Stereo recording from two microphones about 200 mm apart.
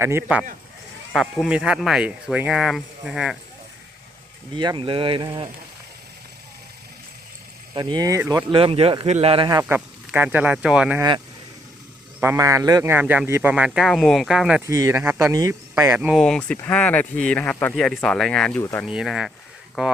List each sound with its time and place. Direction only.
0.0 s speech: 10° right (ahead or behind)
4.5 s speech: 20° right (ahead or behind)
7.7 s speech: 20° right (ahead or behind)
8.4 s speech: 25° right (ahead or behind)
9.5 s speech: 15° right (ahead or behind)
12.2 s speech: 15° right (ahead or behind)
14.6 s speech: 15° right (ahead or behind); by 18.9 s 10° left (ahead or behind)
18.9 s speech: 5° right (ahead or behind)